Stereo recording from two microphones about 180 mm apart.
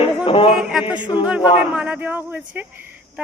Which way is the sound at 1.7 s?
5° right (ahead or behind).